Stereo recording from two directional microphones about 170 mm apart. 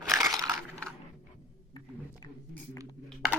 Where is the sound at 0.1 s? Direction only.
20° right (ahead or behind).